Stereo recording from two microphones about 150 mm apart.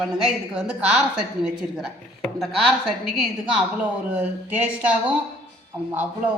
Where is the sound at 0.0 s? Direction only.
Centre (ahead or behind).